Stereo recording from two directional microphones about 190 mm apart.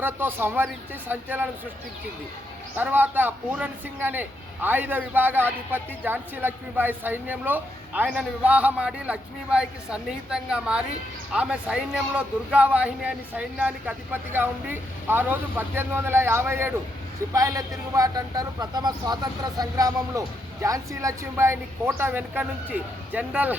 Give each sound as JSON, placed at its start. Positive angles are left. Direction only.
{"t": 0.0, "sound": "a man's voice", "side_deg": -10}
{"t": 2.7, "sound": "a man's voice", "side_deg": -10}